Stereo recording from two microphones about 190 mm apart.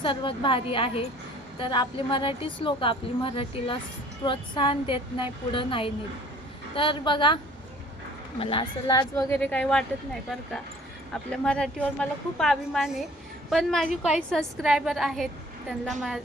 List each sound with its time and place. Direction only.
0.0 s a woman's voice: 25° left (ahead or behind)
8.4 s a woman's voice: 30° left (ahead or behind)
9.4 s a woman's voice: 5° left (ahead or behind)
11.1 s a woman's voice: 5° left (ahead or behind)